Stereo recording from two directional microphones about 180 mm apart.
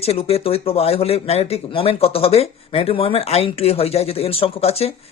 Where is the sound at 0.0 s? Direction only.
35° left (ahead or behind).